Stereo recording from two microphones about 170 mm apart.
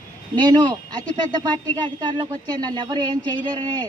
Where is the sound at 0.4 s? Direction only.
25° right (ahead or behind).